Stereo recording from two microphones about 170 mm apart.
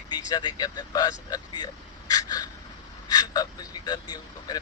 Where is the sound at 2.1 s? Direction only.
20° left (ahead or behind).